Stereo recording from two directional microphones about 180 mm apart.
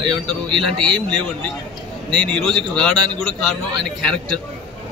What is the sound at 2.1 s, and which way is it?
A man's voice, 5° left (ahead or behind).